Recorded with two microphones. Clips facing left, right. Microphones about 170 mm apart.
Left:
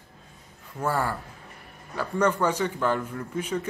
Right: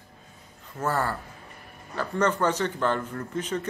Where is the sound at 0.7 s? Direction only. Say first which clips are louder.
Even; 10° left (ahead or behind).